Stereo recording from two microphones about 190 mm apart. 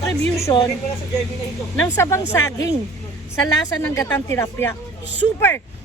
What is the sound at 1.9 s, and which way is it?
A woman's voice, 15° left (ahead or behind).